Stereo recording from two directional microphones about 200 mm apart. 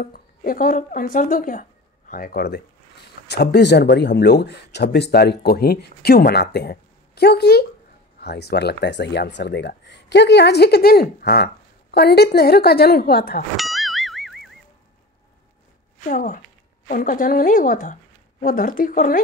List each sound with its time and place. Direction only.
0.0 s speech: 45° left (ahead or behind)
13.6 s music: centre (ahead or behind)
16.1 s a woman's voice: 45° left (ahead or behind)